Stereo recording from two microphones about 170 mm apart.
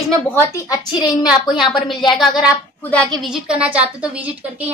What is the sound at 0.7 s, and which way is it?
Speech, 25° left (ahead or behind).